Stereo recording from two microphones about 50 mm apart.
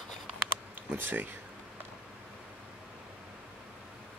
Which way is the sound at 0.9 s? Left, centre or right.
Right.